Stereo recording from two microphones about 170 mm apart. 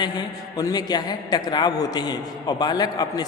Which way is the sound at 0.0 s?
25° left (ahead or behind).